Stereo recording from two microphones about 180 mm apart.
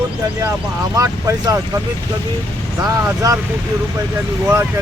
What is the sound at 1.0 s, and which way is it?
Speech, 15° right (ahead or behind).